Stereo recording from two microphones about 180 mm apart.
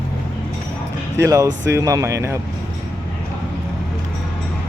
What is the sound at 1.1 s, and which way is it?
Speech, 15° right (ahead or behind).